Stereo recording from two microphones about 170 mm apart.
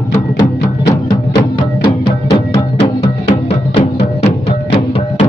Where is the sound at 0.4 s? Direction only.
25° left (ahead or behind).